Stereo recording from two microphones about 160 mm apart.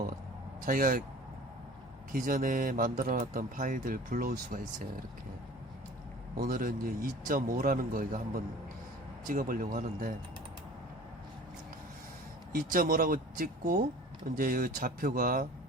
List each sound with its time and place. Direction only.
0.6 s speech: 60° right (ahead or behind)
2.1 s speech: 60° right (ahead or behind)
6.3 s speech: 65° right (ahead or behind)
12.5 s speech: 60° right (ahead or behind)